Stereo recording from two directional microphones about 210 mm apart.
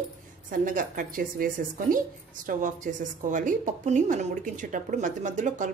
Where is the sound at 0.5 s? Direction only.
40° right (ahead or behind).